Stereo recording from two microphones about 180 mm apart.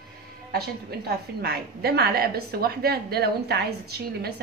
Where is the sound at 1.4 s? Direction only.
60° right (ahead or behind).